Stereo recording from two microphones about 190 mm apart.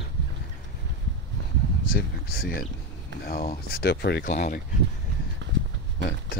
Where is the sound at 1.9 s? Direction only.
50° left (ahead or behind).